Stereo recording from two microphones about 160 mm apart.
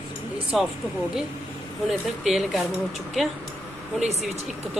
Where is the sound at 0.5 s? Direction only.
Centre (ahead or behind).